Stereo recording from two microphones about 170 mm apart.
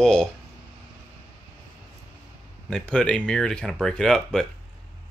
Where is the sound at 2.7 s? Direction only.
5° left (ahead or behind).